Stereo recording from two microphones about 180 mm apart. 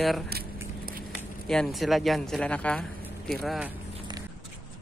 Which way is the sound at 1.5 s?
Centre (ahead or behind).